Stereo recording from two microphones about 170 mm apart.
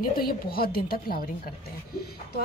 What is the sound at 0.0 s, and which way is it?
A woman's voice, 60° left (ahead or behind).